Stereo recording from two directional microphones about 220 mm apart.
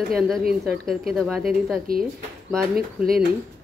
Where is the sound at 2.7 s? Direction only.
40° right (ahead or behind).